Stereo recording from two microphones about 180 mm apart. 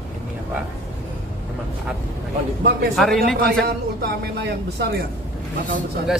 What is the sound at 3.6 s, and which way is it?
A woman's voice, 60° right (ahead or behind).